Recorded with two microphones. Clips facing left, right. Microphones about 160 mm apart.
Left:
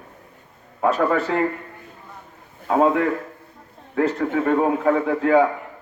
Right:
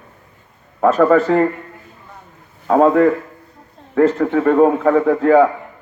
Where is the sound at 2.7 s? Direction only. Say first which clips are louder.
Right 6 dB; 45° right (ahead or behind).